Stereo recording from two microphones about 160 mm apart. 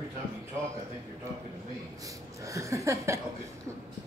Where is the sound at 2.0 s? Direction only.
20° right (ahead or behind).